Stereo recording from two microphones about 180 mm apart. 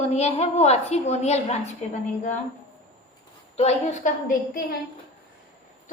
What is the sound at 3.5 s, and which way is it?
Speech, 40° left (ahead or behind).